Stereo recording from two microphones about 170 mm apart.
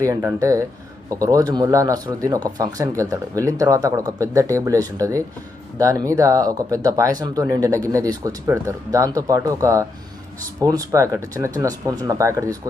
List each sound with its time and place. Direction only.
0.0 s speech: 15° right (ahead or behind)